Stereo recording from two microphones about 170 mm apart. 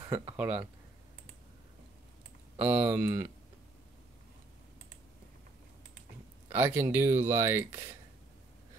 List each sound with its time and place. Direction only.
0.0 s speech: 25° right (ahead or behind)
0.4 s speech: 10° right (ahead or behind)
2.6 s speech: 10° right (ahead or behind)
6.5 s speech: 10° right (ahead or behind)